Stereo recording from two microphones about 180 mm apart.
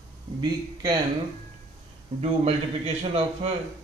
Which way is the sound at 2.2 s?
35° right (ahead or behind).